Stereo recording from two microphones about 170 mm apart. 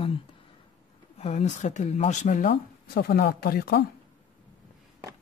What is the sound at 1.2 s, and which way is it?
Speech, 40° left (ahead or behind).